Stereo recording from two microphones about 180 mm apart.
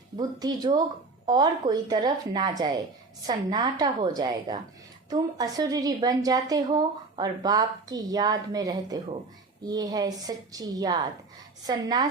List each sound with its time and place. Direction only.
0.2 s a woman's voice: 20° right (ahead or behind)